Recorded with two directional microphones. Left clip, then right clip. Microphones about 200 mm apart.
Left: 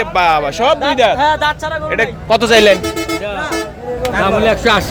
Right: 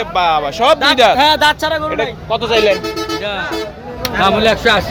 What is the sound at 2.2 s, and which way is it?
Speech, 40° left (ahead or behind).